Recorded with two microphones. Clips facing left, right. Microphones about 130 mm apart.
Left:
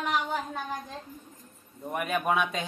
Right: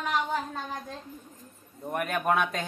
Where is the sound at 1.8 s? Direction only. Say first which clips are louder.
Even; centre (ahead or behind).